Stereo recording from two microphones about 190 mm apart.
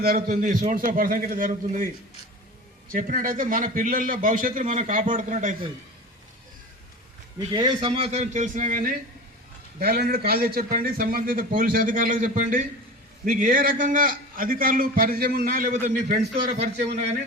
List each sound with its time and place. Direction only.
0.0 s a man's voice: 50° right (ahead or behind)
2.9 s a man's voice: 45° right (ahead or behind)
7.3 s a man's voice: 25° right (ahead or behind); by 16.6 s 45° right (ahead or behind)